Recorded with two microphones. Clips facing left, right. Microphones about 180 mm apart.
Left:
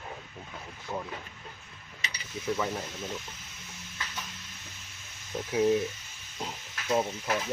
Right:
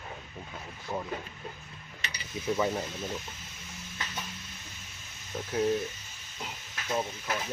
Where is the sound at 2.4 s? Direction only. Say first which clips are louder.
Right 1 dB; 20° right (ahead or behind).